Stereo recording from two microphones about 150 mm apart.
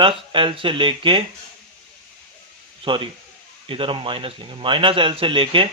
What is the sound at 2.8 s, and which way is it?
A man's voice, 35° right (ahead or behind).